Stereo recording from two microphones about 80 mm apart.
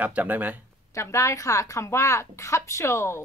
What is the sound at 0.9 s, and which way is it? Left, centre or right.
Speech, left.